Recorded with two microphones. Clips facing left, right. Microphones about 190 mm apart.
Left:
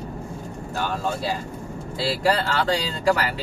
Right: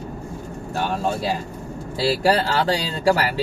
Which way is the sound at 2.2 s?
30° right (ahead or behind).